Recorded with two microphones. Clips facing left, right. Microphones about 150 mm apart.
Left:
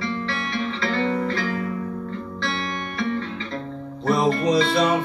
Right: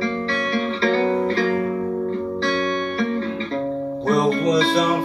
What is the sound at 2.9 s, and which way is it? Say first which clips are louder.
Music: right 3 dB; 35° right (ahead or behind).